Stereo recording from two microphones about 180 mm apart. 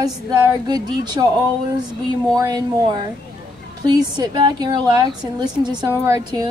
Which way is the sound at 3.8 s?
25° right (ahead or behind).